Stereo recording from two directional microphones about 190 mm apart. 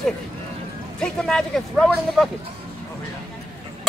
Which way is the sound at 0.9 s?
5° left (ahead or behind).